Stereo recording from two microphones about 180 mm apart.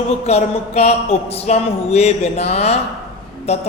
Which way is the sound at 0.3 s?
35° left (ahead or behind).